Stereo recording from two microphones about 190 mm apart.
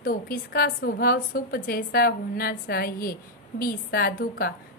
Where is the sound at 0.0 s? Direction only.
50° left (ahead or behind).